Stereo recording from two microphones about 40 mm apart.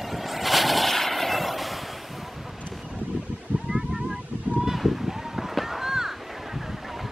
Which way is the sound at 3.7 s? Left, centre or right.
Right.